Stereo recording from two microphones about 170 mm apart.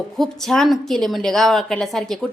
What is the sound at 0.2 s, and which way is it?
A woman's voice, centre (ahead or behind).